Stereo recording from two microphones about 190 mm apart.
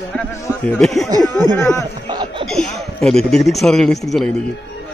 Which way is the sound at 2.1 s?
25° right (ahead or behind).